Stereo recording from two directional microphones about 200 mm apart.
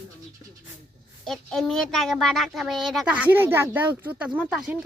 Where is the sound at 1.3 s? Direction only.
Centre (ahead or behind).